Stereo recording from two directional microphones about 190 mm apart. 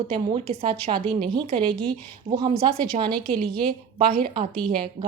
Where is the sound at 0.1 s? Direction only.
25° right (ahead or behind).